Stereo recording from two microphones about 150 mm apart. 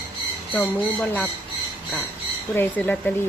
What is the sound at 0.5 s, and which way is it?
Speech, 10° left (ahead or behind).